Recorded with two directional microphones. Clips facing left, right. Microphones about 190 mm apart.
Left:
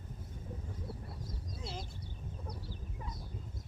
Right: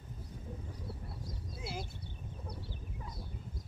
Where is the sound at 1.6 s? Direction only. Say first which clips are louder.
Right 3 dB; 5° right (ahead or behind).